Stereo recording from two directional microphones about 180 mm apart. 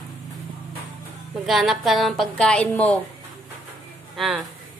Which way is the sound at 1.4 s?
Centre (ahead or behind).